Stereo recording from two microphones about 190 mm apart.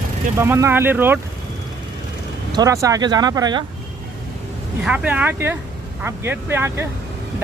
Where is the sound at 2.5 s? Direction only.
20° right (ahead or behind).